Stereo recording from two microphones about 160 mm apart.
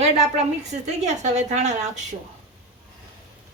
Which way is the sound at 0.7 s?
45° right (ahead or behind).